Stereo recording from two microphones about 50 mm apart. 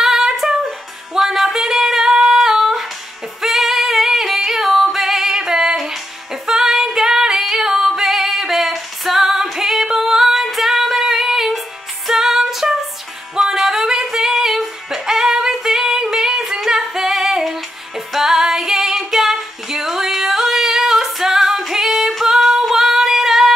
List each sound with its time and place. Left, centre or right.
0.0 s music: centre
3.3 s singing: centre
6.4 s female singing: centre
12.1 s music: centre
14.0 s singing: centre